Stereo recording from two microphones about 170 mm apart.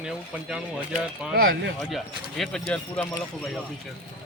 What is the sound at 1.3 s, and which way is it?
Speech, 65° right (ahead or behind).